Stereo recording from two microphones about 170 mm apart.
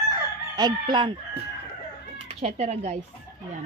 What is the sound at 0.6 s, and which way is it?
Speech, 25° right (ahead or behind).